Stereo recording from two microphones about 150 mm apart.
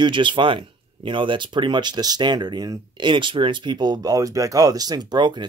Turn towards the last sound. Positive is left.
turn(degrees=-30)  # may be behind; listen again after turning